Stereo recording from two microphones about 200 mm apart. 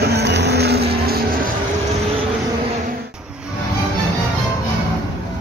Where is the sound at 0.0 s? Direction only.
55° right (ahead or behind).